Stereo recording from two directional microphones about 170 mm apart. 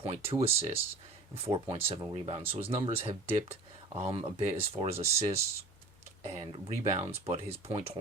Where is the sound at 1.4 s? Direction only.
35° right (ahead or behind).